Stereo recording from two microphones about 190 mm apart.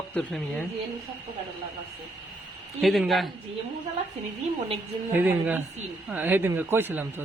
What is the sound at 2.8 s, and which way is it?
Speech, centre (ahead or behind).